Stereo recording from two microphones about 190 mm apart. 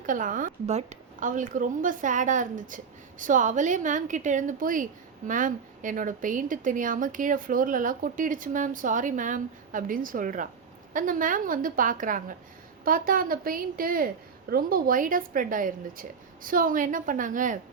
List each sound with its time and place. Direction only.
0.0 s a woman's voice: 45° right (ahead or behind)